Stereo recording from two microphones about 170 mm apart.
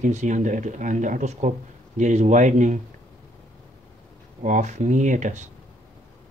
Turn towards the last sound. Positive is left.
turn(degrees=-45)  # may be behind; listen again after turning